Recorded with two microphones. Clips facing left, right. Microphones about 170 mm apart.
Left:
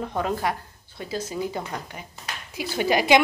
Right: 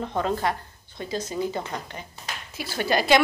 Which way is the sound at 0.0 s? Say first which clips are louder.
Even; 5° left (ahead or behind).